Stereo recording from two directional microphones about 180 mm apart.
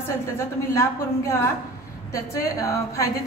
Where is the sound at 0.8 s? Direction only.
15° left (ahead or behind).